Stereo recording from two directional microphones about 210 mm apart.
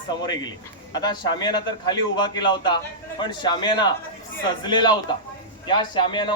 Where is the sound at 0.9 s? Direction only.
20° left (ahead or behind).